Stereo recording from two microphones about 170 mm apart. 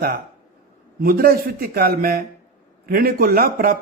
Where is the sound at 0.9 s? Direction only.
60° right (ahead or behind).